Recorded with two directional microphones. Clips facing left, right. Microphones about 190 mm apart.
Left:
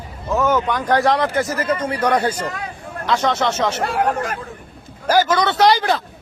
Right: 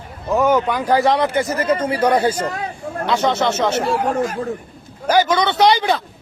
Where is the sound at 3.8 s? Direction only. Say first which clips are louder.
Right 1 dB; 60° left (ahead or behind).